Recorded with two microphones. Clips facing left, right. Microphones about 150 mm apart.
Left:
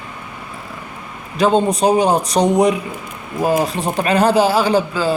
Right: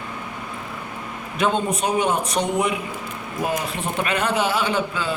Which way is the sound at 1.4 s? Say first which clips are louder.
Left 7 dB; 35° left (ahead or behind).